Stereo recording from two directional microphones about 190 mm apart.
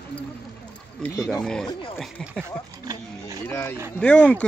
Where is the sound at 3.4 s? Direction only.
10° left (ahead or behind).